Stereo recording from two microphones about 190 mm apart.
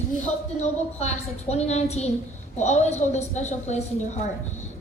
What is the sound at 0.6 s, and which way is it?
A woman's voice, 35° left (ahead or behind).